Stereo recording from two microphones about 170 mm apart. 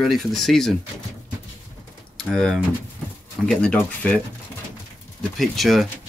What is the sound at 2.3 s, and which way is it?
Speech, centre (ahead or behind).